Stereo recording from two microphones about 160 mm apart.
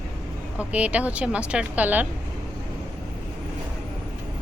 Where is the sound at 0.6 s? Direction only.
10° right (ahead or behind).